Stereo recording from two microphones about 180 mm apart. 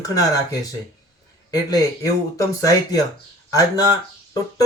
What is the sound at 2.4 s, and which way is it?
A man's voice, 20° left (ahead or behind).